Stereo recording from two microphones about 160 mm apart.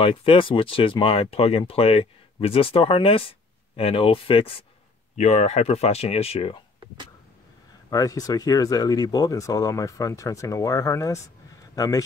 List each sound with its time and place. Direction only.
0.0 s speech: 35° left (ahead or behind)
7.9 s speech: 20° left (ahead or behind)